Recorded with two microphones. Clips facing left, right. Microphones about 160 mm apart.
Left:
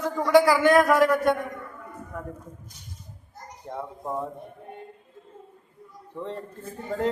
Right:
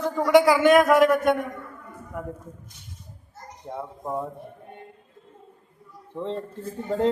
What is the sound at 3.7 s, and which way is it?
Speech, 10° right (ahead or behind).